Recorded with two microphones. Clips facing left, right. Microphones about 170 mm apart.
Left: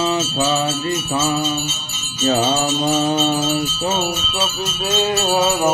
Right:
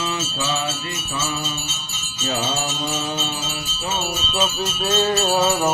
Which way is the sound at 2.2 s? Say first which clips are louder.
Left 7 dB; 50° left (ahead or behind).